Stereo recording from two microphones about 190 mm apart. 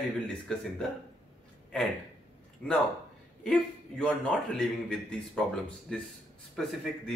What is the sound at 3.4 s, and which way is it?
A man's voice, 5° left (ahead or behind).